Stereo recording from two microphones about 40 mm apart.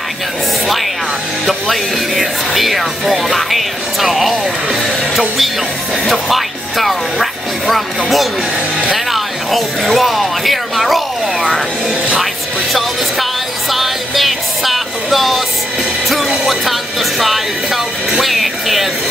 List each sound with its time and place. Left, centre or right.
1.5 s music: centre
6.0 s music: centre
8.9 s speech: centre
12.7 s music: centre
16.4 s a sound: centre
18.1 s music: centre